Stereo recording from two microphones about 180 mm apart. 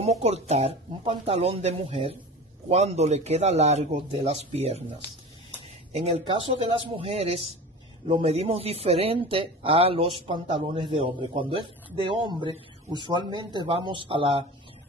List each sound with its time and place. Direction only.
0.0 s speech: 35° right (ahead or behind)
5.9 s speech: 35° right (ahead or behind)